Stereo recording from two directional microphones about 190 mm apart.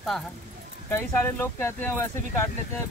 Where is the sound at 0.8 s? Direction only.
15° left (ahead or behind).